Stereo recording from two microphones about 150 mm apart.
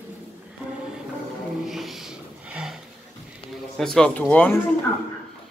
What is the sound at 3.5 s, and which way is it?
Speech, centre (ahead or behind).